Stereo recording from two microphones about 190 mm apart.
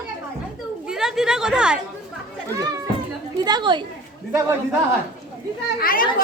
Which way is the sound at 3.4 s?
20° right (ahead or behind).